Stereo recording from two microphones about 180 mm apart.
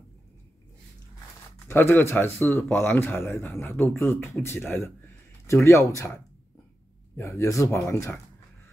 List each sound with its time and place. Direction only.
1.7 s speech: 10° left (ahead or behind)